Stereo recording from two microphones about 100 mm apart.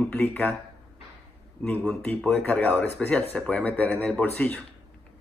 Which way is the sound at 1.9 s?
15° left (ahead or behind).